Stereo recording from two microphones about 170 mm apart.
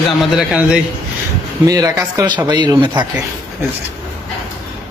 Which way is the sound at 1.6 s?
20° right (ahead or behind).